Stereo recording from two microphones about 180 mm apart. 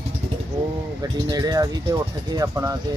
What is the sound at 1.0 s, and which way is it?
Speech, 20° right (ahead or behind).